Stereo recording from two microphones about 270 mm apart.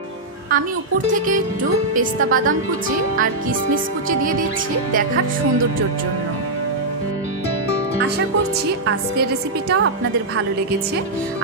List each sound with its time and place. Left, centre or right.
0.5 s a woman's voice: right
2.1 s a woman's voice: right
9.7 s a woman's voice: right